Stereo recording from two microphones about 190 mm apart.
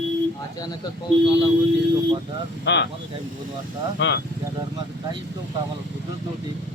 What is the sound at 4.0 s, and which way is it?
Speech, 70° left (ahead or behind).